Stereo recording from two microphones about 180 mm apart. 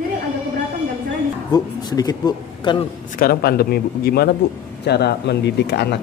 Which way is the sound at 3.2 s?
55° left (ahead or behind).